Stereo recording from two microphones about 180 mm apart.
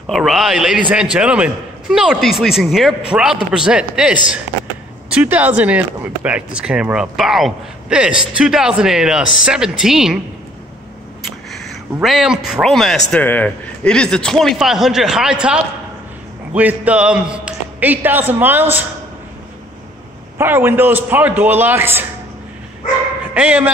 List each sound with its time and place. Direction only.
0.0 s speech: centre (ahead or behind)
11.5 s a sound: centre (ahead or behind)
12.4 s a man's voice: centre (ahead or behind)
20.3 s a man's voice: 10° right (ahead or behind)
23.3 s a man's voice: 10° right (ahead or behind)